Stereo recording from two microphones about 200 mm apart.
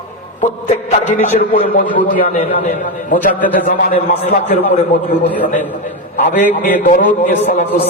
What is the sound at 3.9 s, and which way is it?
A man's voice, 30° left (ahead or behind).